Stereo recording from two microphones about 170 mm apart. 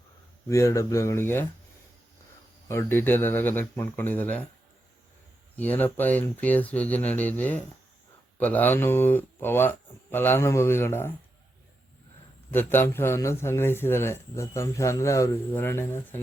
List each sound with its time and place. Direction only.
0.4 s a man's voice: 20° left (ahead or behind)
2.6 s a man's voice: 15° left (ahead or behind)
5.5 s a man's voice: 10° left (ahead or behind)
12.5 s a man's voice: 10° left (ahead or behind)